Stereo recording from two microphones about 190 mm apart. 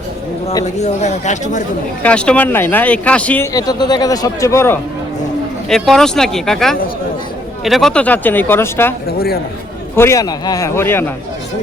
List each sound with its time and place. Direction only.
0.6 s speech: 35° left (ahead or behind)
2.0 s speech: 5° left (ahead or behind)
5.6 s speech: centre (ahead or behind)
9.1 s a man's voice: 55° left (ahead or behind)
9.9 s speech: 15° left (ahead or behind)